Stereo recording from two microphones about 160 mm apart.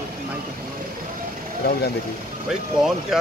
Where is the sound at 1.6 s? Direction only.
80° left.